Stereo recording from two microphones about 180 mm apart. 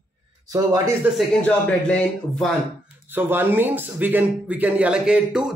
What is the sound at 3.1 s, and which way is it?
A man's voice, 10° right (ahead or behind).